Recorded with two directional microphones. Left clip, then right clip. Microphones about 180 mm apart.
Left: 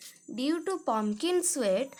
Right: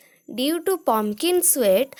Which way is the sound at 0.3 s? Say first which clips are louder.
Right 8 dB; 35° right (ahead or behind).